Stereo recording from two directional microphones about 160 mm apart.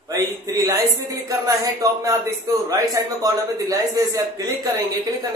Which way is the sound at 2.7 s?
20° right (ahead or behind).